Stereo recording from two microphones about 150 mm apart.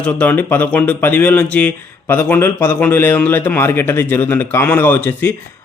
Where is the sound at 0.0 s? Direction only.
10° left (ahead or behind).